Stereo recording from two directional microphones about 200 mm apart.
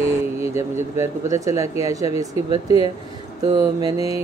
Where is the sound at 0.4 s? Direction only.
15° right (ahead or behind).